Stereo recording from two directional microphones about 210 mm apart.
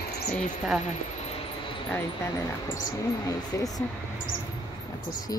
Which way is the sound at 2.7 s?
15° left (ahead or behind).